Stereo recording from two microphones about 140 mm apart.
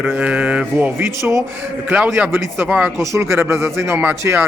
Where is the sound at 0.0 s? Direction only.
10° right (ahead or behind).